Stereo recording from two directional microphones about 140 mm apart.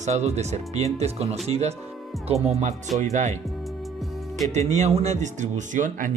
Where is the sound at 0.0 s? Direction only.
55° right (ahead or behind).